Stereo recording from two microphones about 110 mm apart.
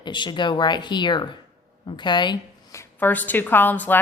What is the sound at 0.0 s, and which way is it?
Speech, 45° left (ahead or behind).